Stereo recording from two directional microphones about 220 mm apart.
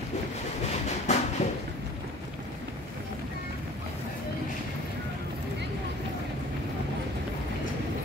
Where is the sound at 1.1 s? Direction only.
30° left (ahead or behind).